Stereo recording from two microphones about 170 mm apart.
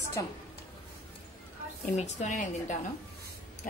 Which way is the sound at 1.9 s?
45° left (ahead or behind).